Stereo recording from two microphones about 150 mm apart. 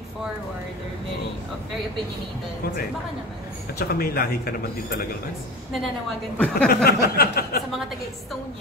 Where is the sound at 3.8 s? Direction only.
90° left.